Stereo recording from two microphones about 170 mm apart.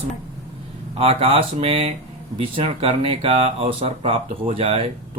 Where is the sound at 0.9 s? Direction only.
35° right (ahead or behind).